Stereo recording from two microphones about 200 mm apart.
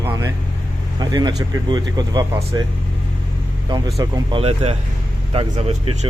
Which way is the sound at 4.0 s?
20° right (ahead or behind).